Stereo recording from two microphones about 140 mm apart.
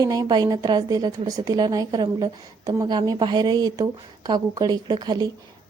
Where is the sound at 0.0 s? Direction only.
25° right (ahead or behind).